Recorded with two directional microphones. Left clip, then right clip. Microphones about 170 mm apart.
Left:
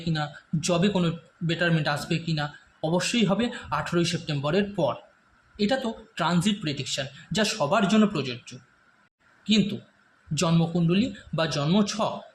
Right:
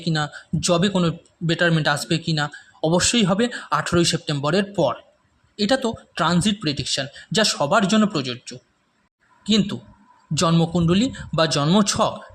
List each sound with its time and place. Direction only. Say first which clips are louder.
0.0 s a man's voice: right 6 dB; 40° right (ahead or behind)